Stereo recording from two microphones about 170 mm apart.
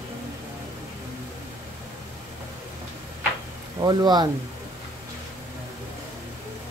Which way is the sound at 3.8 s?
25° right (ahead or behind).